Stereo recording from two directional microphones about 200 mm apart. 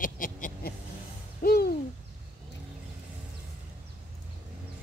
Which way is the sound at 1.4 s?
50° left (ahead or behind).